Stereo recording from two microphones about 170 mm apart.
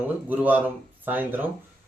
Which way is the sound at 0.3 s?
10° right (ahead or behind).